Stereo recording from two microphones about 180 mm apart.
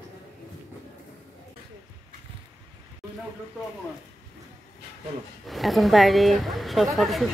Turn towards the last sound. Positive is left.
turn(degrees=0)  # may be behind; listen again after turning